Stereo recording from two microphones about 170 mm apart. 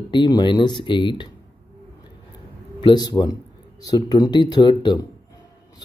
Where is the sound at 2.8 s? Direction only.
25° left (ahead or behind).